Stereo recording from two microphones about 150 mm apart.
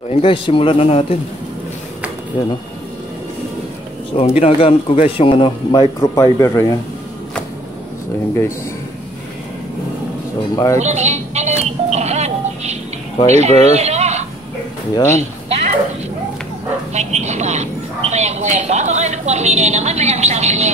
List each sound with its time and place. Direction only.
0.1 s speech: 40° left (ahead or behind)
2.3 s speech: 35° left (ahead or behind)
4.4 s a man's voice: 40° left (ahead or behind); by 6.8 s 20° left (ahead or behind)
10.5 s a man's voice: 20° left (ahead or behind)
10.8 s music: 50° right (ahead or behind)
13.3 s speech: 45° right (ahead or behind)
15.0 s a sound: 50° right (ahead or behind)
16.9 s a sound: 50° right (ahead or behind)